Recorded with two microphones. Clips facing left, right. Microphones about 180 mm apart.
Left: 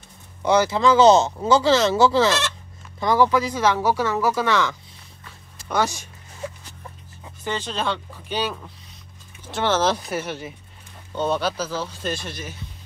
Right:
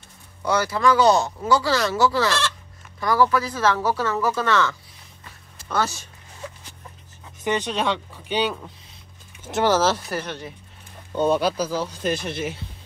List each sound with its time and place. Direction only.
0.4 s speech: 20° left (ahead or behind)
7.4 s speech: 15° right (ahead or behind); by 10.5 s 5° left (ahead or behind)
11.1 s speech: 10° right (ahead or behind)